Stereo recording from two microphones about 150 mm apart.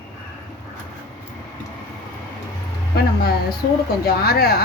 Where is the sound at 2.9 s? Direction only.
90° left.